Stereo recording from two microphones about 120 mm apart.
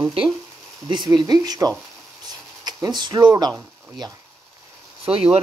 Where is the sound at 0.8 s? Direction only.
35° right (ahead or behind).